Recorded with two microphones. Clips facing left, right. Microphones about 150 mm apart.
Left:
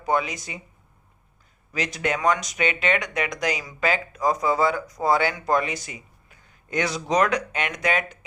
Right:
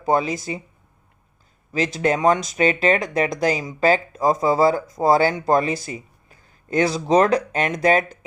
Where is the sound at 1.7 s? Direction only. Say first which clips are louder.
Right 6 dB; 30° right (ahead or behind).